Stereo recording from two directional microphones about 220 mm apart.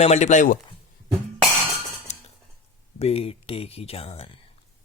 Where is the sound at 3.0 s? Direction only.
25° left (ahead or behind).